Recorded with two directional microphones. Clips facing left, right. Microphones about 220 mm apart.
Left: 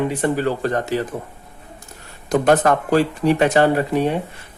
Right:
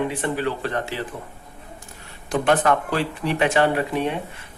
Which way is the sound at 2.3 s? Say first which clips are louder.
Left 4 dB; 40° left (ahead or behind).